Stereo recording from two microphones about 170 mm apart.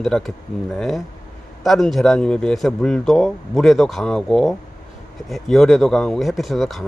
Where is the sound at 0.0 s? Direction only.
Centre (ahead or behind).